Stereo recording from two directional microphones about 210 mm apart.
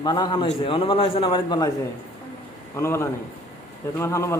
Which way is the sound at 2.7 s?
10° left (ahead or behind).